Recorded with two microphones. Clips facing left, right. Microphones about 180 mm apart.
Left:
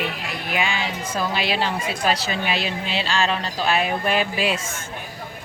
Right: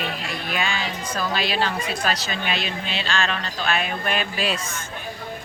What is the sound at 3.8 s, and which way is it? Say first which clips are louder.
Speech: left 4 dB; 25° left (ahead or behind).